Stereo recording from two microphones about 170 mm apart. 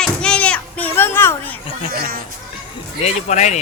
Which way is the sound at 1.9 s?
60° right (ahead or behind).